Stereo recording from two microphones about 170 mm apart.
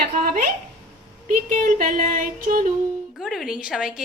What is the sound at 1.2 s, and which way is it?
Female singing, 50° right (ahead or behind).